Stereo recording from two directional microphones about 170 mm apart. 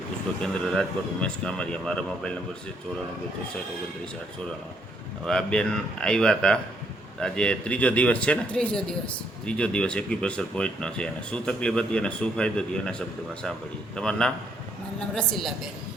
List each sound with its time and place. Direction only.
0.4 s speech: 5° left (ahead or behind)
5.2 s speech: 5° left (ahead or behind)